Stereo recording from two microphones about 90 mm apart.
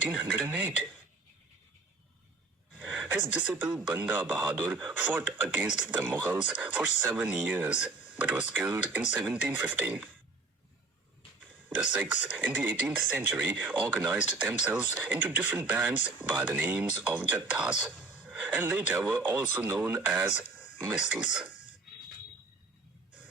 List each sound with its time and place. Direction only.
0.0 s speech: 15° right (ahead or behind)
2.7 s a sound: 10° right (ahead or behind)
3.8 s speech: 15° right (ahead or behind)
11.8 s speech: 15° right (ahead or behind)